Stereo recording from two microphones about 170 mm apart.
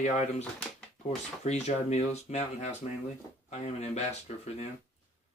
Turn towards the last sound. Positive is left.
turn(degrees=40)  # may be behind; listen again after turning